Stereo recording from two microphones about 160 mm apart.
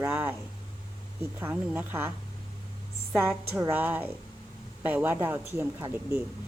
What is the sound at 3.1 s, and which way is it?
A woman's voice, 15° right (ahead or behind).